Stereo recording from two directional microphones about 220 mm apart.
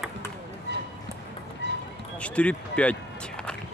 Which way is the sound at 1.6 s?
50° right (ahead or behind).